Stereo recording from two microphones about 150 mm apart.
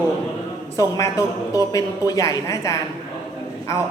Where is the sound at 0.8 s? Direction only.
25° left (ahead or behind).